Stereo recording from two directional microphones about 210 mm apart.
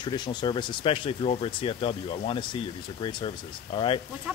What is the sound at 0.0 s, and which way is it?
Speech, 20° left (ahead or behind).